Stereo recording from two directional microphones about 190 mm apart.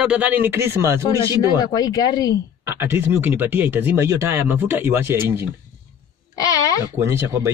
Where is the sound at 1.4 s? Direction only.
20° left (ahead or behind).